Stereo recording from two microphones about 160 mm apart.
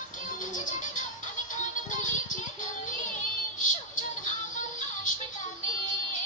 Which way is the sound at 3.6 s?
50° left (ahead or behind).